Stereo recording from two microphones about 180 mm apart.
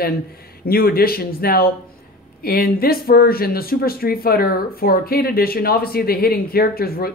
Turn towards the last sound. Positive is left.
turn(degrees=55)  # may be behind; listen again after turning